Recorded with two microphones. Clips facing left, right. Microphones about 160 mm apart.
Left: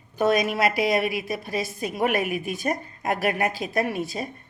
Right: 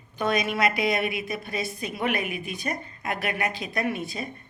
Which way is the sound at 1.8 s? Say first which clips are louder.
Left 5 dB; 45° left (ahead or behind).